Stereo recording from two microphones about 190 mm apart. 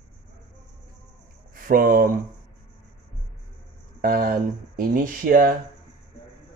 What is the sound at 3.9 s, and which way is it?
Speech, 50° right (ahead or behind).